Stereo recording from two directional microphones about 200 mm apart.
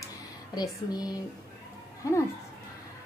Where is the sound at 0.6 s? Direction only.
20° left (ahead or behind).